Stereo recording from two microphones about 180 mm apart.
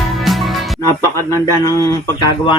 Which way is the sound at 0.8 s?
15° left (ahead or behind).